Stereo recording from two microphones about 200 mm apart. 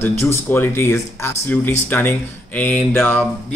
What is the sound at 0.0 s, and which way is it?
A man's voice, 10° left (ahead or behind).